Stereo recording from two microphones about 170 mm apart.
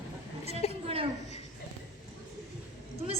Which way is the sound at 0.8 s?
35° right (ahead or behind).